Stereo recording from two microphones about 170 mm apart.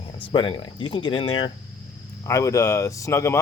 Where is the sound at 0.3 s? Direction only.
30° left (ahead or behind).